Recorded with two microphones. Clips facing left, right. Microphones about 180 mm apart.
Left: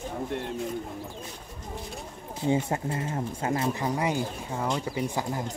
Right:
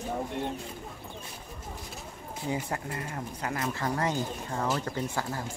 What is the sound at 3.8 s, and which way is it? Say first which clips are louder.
Speech: left 2 dB; 10° left (ahead or behind).